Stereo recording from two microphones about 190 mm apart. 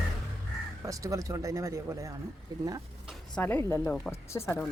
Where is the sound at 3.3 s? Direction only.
10° left (ahead or behind).